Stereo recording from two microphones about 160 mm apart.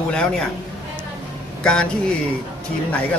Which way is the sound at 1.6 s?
5° left (ahead or behind).